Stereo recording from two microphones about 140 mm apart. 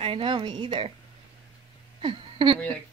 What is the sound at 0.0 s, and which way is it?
Speech, 40° right (ahead or behind).